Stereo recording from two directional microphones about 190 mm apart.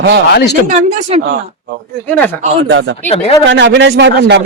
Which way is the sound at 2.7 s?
90° right.